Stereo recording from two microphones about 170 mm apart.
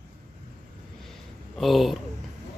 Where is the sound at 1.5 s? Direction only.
Centre (ahead or behind).